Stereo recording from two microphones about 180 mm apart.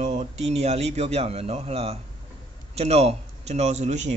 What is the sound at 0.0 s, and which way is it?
A man's voice, 40° right (ahead or behind).